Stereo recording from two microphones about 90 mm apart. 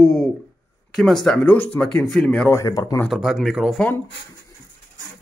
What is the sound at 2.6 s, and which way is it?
Speech, 40° left (ahead or behind).